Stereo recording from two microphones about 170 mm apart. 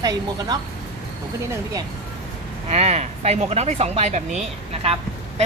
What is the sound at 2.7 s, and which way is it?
Speech, 40° right (ahead or behind).